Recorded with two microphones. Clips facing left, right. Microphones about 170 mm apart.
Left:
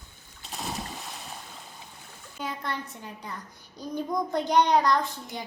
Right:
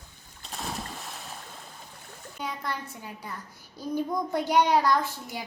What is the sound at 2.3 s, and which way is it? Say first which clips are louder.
Speech: even; centre (ahead or behind).